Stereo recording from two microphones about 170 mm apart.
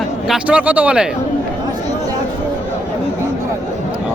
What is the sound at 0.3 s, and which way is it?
Speech, 5° right (ahead or behind).